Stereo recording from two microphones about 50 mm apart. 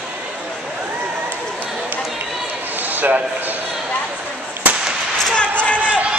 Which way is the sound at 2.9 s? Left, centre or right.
Right.